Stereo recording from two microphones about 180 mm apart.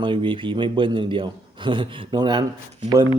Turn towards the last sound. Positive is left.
turn(degrees=-20)  # may be behind; listen again after turning